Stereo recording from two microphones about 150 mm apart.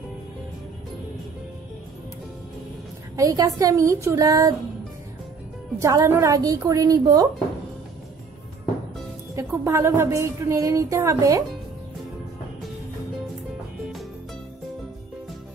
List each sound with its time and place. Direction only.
3.2 s a woman's voice: 20° right (ahead or behind)
5.8 s a woman's voice: 20° right (ahead or behind)
9.3 s a woman's voice: 20° right (ahead or behind)